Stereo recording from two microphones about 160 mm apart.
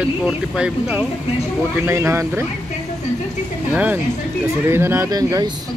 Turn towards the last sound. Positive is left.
turn(degrees=-25)  # may be behind; listen again after turning